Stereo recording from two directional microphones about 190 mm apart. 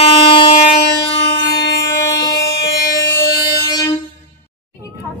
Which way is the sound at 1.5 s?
65° left (ahead or behind).